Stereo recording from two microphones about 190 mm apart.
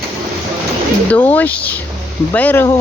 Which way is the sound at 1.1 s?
10° left (ahead or behind).